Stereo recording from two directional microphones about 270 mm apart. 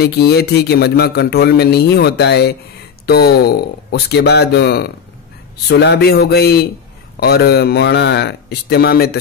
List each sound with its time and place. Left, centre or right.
0.0 s a man's voice: left